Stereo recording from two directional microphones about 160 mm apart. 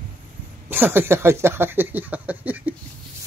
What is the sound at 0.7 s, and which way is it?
Speech, 15° right (ahead or behind).